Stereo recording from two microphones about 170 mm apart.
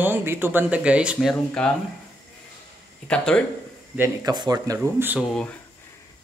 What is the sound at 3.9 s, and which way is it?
Speech, 15° right (ahead or behind).